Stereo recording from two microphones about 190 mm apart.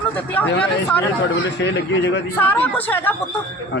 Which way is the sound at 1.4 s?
65° left (ahead or behind).